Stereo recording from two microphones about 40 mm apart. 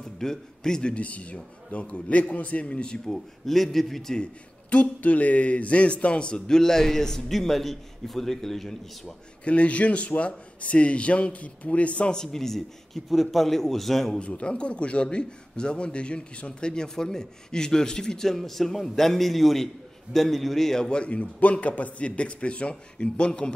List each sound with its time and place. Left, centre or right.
0.2 s a man's voice: centre
0.9 s a man's voice: left
3.1 s a man's voice: centre
4.6 s a man's voice: left; by 9.1 s centre
9.4 s a man's voice: left
12.1 s a man's voice: centre
14.2 s a man's voice: left; by 20.9 s centre
20.9 s a man's voice: left